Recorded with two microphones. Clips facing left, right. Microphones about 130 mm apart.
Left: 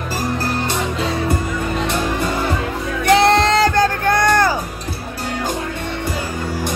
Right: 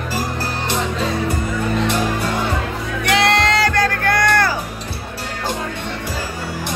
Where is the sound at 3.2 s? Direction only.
25° left (ahead or behind).